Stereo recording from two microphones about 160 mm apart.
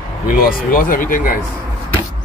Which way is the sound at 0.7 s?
60° left (ahead or behind).